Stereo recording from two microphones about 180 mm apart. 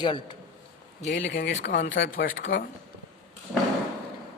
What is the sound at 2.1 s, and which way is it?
Speech, 50° left (ahead or behind).